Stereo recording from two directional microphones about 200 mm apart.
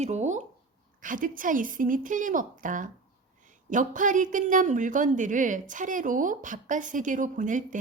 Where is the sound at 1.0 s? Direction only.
40° right (ahead or behind).